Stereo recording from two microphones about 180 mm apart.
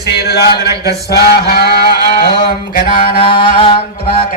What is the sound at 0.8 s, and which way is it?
Mantra, 65° left (ahead or behind).